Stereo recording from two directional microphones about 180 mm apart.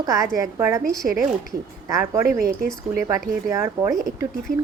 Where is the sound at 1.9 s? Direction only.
15° right (ahead or behind).